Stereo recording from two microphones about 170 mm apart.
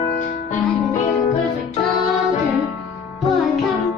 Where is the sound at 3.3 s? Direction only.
Centre (ahead or behind).